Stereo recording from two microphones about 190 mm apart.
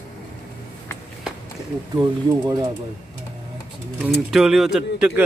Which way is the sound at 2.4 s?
20° right (ahead or behind).